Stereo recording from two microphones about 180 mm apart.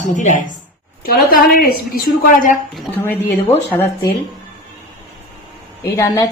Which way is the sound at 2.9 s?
10° left (ahead or behind).